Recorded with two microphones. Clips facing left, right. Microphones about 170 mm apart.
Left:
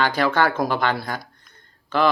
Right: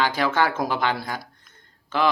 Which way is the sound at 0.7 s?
15° right (ahead or behind).